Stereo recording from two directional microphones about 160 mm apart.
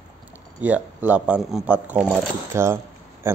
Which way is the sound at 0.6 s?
10° right (ahead or behind).